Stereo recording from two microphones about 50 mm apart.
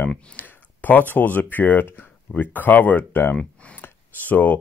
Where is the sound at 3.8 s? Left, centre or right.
Left.